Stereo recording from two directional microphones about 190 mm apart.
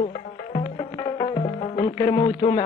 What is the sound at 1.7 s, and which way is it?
Music, 25° left (ahead or behind).